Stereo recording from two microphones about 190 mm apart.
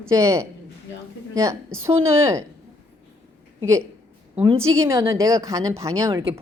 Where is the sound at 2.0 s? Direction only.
15° right (ahead or behind).